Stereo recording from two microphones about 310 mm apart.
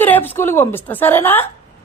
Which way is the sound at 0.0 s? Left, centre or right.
Centre.